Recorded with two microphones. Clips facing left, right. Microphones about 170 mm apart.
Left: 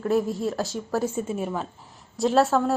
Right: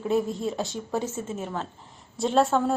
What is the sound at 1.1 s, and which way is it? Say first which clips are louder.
A woman's voice: left 4 dB; 15° left (ahead or behind).